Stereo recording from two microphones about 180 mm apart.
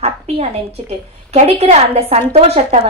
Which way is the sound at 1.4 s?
35° right (ahead or behind).